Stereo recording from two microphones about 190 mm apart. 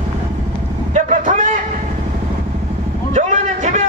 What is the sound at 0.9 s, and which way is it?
Vehicle, 40° right (ahead or behind).